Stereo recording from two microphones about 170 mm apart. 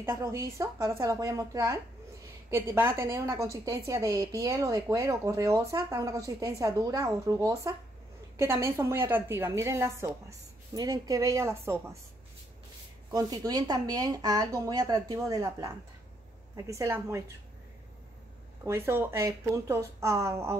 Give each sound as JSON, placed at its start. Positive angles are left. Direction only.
{"t": 0.0, "sound": "a woman's voice", "side_deg": -15}
{"t": 13.1, "sound": "a woman's voice", "side_deg": -20}
{"t": 18.6, "sound": "speech", "side_deg": -15}